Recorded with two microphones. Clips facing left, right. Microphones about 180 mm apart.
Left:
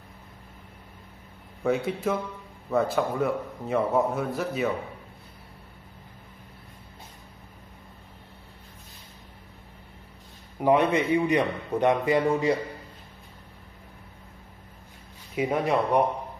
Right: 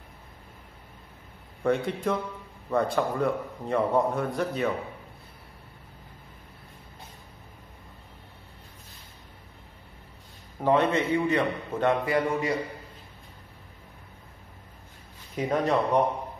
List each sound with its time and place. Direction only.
1.6 s a man's voice: 5° left (ahead or behind)
10.6 s a man's voice: 15° left (ahead or behind)
15.3 s a man's voice: 10° left (ahead or behind)